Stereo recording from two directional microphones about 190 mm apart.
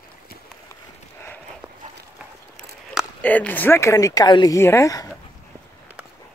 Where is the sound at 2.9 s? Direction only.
10° left (ahead or behind).